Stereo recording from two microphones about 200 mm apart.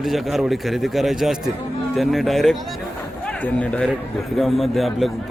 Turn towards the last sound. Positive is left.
turn(degrees=0)  # may be behind; listen again after turning